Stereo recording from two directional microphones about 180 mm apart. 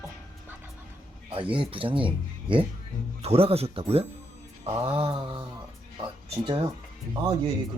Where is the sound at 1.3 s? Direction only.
30° right (ahead or behind).